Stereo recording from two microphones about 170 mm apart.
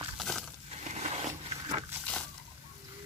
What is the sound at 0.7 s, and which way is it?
Crushing, 40° right (ahead or behind).